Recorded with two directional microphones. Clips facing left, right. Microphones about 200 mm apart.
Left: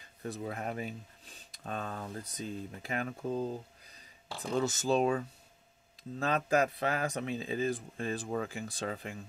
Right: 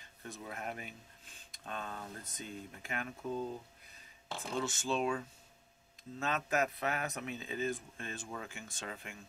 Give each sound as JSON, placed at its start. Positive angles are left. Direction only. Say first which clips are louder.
{"t": 0.2, "sound": "speech", "louder": "left 7 dB", "side_deg": 35}